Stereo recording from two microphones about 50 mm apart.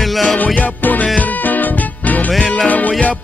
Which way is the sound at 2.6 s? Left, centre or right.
Left.